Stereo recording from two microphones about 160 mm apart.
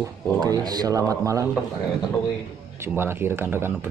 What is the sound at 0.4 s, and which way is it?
A man's voice, 25° right (ahead or behind).